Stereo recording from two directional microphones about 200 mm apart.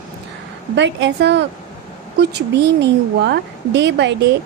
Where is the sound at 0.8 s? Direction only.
65° right (ahead or behind).